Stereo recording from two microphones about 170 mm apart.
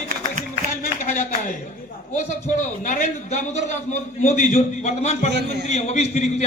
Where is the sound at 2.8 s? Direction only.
45° left (ahead or behind).